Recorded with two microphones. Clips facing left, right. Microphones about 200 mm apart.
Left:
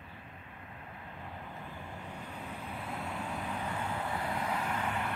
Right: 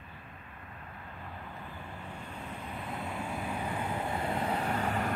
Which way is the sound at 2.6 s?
Centre (ahead or behind).